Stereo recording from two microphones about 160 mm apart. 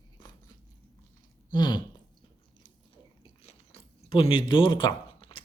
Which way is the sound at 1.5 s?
25° left (ahead or behind).